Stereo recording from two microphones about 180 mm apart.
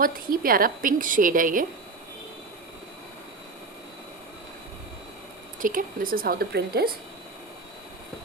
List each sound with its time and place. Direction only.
0.0 s a woman's voice: 55° right (ahead or behind)
5.5 s a woman's voice: 50° right (ahead or behind)